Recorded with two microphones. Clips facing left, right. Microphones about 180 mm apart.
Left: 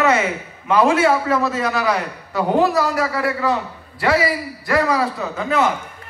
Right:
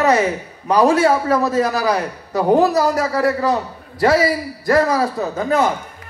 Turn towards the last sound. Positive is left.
turn(degrees=-40)  # may be behind; listen again after turning